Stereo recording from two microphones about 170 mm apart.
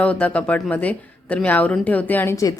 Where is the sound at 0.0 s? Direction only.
10° left (ahead or behind).